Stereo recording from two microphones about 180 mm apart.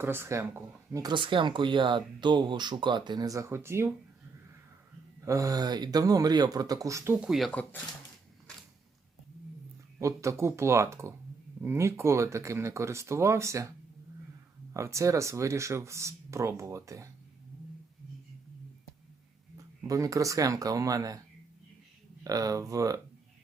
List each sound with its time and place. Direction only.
0.0 s speech: 15° right (ahead or behind)
5.2 s speech: 20° right (ahead or behind)
7.3 s speech: centre (ahead or behind)
10.0 s speech: 15° right (ahead or behind)
19.9 s speech: 20° right (ahead or behind)
22.2 s speech: 20° right (ahead or behind)